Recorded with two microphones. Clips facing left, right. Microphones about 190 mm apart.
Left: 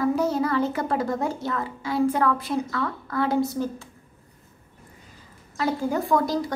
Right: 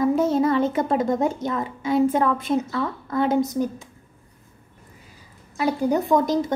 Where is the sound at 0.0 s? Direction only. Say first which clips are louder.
Right 4 dB; 25° right (ahead or behind).